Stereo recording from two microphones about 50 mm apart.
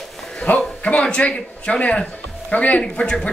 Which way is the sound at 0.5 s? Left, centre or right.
Left.